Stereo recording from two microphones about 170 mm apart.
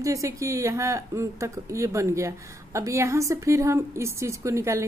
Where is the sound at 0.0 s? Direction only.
20° right (ahead or behind).